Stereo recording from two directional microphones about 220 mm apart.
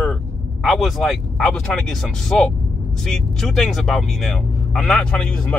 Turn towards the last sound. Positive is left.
turn(degrees=5)  # may be behind; listen again after turning